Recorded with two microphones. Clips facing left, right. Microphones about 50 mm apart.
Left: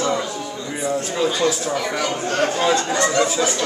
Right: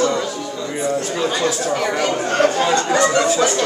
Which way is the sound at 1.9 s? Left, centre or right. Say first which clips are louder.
Right 3 dB; right.